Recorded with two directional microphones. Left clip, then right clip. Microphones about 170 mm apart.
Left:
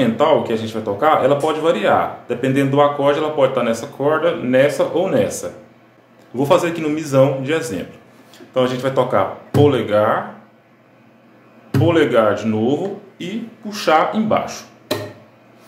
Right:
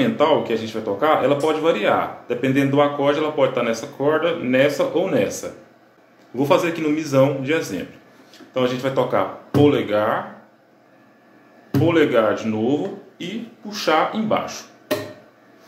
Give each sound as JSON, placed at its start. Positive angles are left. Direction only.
{"t": 0.0, "sound": "speech", "side_deg": 10}
{"t": 11.8, "sound": "speech", "side_deg": 15}